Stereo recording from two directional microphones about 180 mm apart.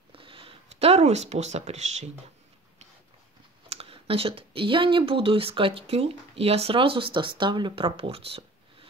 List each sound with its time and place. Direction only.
0.1 s speech: 30° right (ahead or behind)
3.6 s speech: 35° right (ahead or behind)